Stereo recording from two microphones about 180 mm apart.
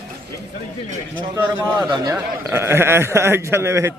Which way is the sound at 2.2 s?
15° right (ahead or behind).